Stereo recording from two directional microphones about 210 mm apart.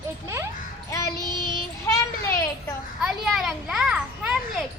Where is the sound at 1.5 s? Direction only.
15° left (ahead or behind).